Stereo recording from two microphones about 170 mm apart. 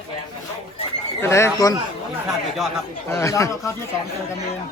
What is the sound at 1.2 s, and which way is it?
Speech, 15° left (ahead or behind).